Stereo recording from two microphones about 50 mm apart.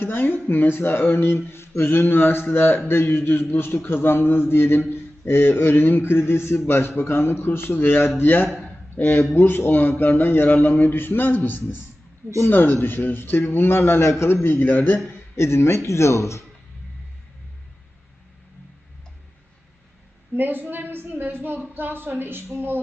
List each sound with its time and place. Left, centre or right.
0.0 s speech: left
14.4 s speech: left
15.4 s speech: left
20.3 s a woman's voice: right